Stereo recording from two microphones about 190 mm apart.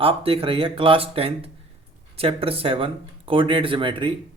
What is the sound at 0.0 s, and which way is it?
Speech, 30° right (ahead or behind).